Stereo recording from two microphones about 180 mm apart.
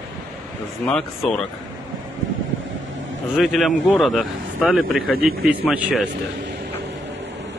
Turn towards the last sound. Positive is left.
turn(degrees=-5)  # may be behind; listen again after turning